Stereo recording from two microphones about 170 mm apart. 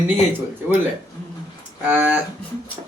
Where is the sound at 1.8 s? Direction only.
10° right (ahead or behind).